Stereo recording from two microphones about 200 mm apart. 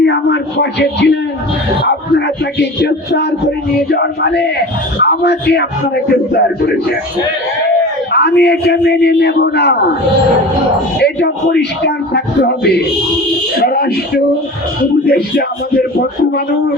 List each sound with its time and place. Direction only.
0.0 s a sound: 60° left (ahead or behind)
1.8 s speech: 60° left (ahead or behind)
8.1 s speech: 55° left (ahead or behind)
11.0 s speech: 55° left (ahead or behind)
15.0 s speech: 50° left (ahead or behind)